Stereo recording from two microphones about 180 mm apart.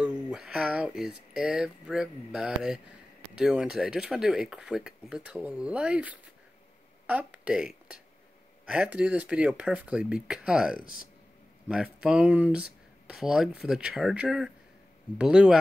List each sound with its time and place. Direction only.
0.0 s speech: 5° right (ahead or behind)
10.8 s speech: 50° left (ahead or behind)
11.7 s speech: 5° right (ahead or behind)